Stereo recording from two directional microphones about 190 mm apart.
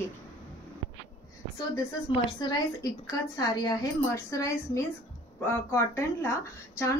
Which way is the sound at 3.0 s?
20° left (ahead or behind).